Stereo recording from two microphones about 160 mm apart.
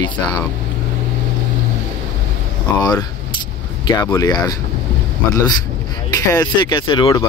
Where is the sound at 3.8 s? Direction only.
25° left (ahead or behind).